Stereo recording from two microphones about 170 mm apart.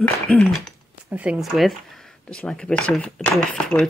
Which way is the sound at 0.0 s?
5° left (ahead or behind).